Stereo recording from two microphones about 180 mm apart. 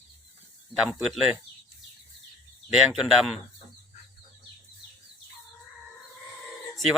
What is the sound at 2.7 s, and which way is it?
Speech, 5° right (ahead or behind).